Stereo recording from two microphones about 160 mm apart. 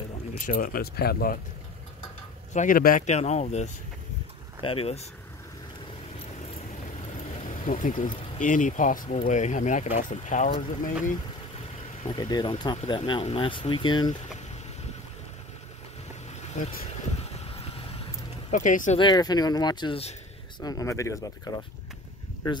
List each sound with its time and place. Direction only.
0.5 s speech: 60° left (ahead or behind)
2.5 s speech: 55° left (ahead or behind)
3.2 s speech: 45° left (ahead or behind)
7.1 s vehicle: 50° left (ahead or behind)
8.4 s speech: 55° left (ahead or behind)
12.0 s speech: 30° left (ahead or behind)
16.3 s vehicle: 40° left (ahead or behind)
18.5 s speech: 55° left (ahead or behind)
18.9 s speech: 25° left (ahead or behind)